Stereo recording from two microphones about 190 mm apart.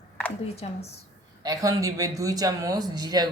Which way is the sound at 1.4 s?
20° right (ahead or behind).